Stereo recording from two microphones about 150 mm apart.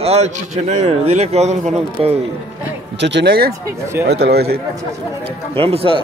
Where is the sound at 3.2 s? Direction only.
90° right.